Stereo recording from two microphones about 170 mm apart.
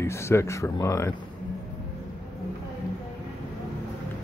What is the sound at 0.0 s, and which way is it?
Speech, 15° left (ahead or behind).